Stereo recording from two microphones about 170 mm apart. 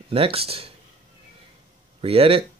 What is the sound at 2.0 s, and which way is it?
Speech, 35° right (ahead or behind).